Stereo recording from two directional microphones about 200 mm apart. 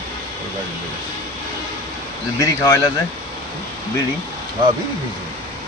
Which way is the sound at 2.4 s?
15° left (ahead or behind).